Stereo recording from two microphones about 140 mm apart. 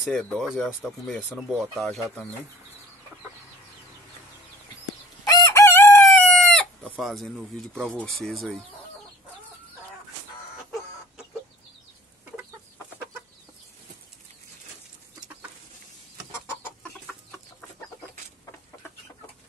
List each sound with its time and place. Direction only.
0.0 s speech: 5° left (ahead or behind)
5.2 s chicken: 25° left (ahead or behind); by 6.6 s 5° left (ahead or behind)
6.8 s speech: centre (ahead or behind)